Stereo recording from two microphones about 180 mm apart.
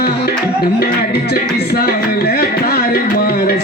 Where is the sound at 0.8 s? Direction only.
60° left (ahead or behind).